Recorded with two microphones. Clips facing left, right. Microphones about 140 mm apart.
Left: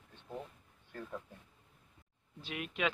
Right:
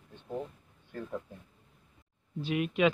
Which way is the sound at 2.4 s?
5° right (ahead or behind).